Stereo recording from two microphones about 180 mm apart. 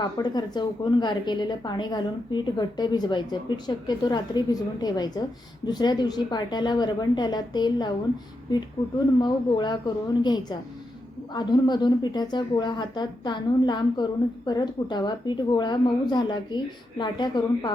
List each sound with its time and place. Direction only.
0.2 s a woman's voice: 25° left (ahead or behind)
9.2 s a woman's voice: 25° left (ahead or behind)